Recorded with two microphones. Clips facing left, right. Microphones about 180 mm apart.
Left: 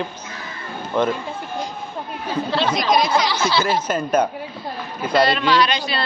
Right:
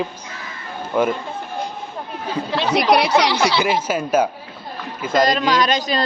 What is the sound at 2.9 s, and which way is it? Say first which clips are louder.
Speech: right 3 dB; 70° right (ahead or behind).